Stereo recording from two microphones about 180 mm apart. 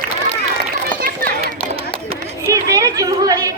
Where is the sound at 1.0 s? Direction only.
55° right (ahead or behind).